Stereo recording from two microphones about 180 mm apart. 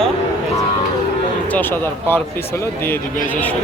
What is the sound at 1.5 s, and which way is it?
Speech, 10° left (ahead or behind).